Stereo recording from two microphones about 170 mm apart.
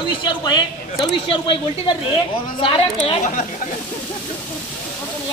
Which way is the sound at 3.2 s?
45° left (ahead or behind).